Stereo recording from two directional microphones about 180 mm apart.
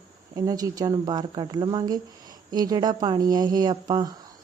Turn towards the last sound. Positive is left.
turn(degrees=-20)  # may be behind; listen again after turning